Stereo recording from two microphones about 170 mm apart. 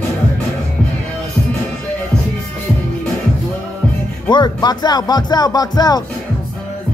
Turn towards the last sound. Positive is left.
turn(degrees=25)  # may be behind; listen again after turning